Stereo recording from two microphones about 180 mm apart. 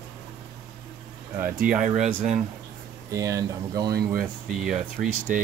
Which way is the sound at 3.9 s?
55° right (ahead or behind).